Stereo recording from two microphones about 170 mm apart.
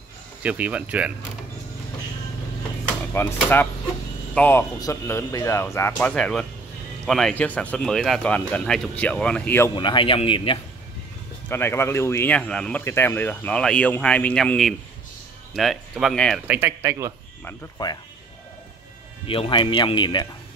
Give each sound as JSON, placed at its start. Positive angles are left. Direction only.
{"t": 0.4, "sound": "speech", "side_deg": -10}
{"t": 3.2, "sound": "speech", "side_deg": 15}
{"t": 4.4, "sound": "speech", "side_deg": 10}
{"t": 9.8, "sound": "speech", "side_deg": 30}
{"t": 11.4, "sound": "speech", "side_deg": 15}
{"t": 16.4, "sound": "speech", "side_deg": -10}
{"t": 17.8, "sound": "speech", "side_deg": 25}
{"t": 19.2, "sound": "speech", "side_deg": 30}